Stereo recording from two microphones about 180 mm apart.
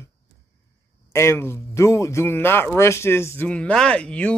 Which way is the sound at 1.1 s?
15° left (ahead or behind).